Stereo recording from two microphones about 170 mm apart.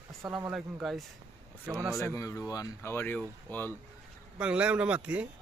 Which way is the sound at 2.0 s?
15° left (ahead or behind).